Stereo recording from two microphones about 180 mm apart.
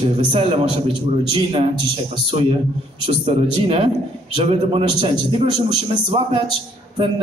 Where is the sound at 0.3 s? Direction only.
30° right (ahead or behind).